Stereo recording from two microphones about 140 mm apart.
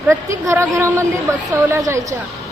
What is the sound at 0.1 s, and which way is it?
A woman's voice, 20° right (ahead or behind).